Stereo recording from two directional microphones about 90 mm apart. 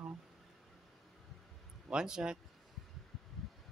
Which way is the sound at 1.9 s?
10° right (ahead or behind).